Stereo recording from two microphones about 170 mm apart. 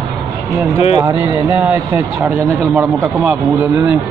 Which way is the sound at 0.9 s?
25° right (ahead or behind).